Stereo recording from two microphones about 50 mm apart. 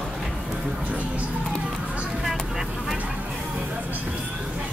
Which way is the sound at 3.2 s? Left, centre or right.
Centre.